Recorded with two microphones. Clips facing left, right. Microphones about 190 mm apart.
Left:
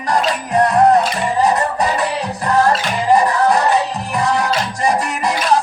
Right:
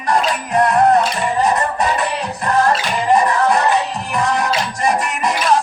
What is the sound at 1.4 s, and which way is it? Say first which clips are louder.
Music: left 2 dB; 40° left (ahead or behind).